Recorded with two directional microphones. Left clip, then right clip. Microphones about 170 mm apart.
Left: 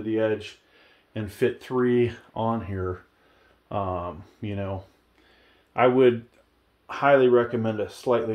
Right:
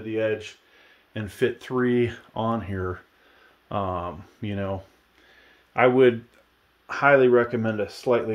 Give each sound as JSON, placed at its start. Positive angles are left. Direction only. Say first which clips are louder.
{"t": 0.0, "sound": "speech", "louder": "left 1 dB", "side_deg": 0}
{"t": 1.1, "sound": "speech", "louder": "even", "side_deg": -20}